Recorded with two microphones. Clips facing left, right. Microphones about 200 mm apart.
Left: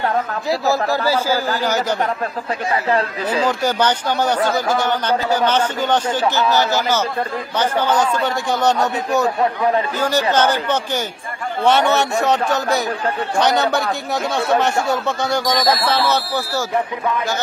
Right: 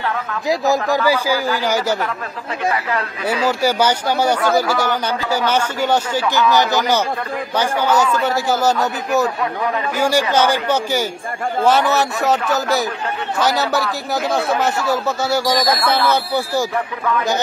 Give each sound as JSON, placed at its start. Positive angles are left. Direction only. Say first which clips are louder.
{"t": 1.0, "sound": "a man's voice", "louder": "right 1 dB", "side_deg": -15}
{"t": 2.7, "sound": "speech", "louder": "left 7 dB", "side_deg": 30}
{"t": 3.4, "sound": "a man's voice", "louder": "right 3 dB", "side_deg": -10}
{"t": 15.6, "sound": "speech", "louder": "even", "side_deg": 25}
{"t": 16.1, "sound": "a man's voice", "louder": "right 2 dB", "side_deg": -15}